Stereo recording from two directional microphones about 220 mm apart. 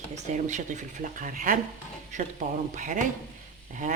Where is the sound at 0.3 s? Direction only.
35° right (ahead or behind).